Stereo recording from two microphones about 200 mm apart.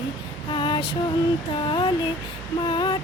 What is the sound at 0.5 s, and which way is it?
Female singing, 25° left (ahead or behind).